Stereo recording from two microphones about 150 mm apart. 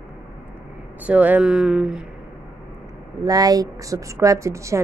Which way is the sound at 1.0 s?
10° right (ahead or behind).